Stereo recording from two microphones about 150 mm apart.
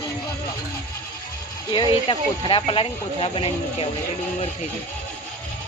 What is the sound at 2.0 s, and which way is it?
Speech, 35° left (ahead or behind).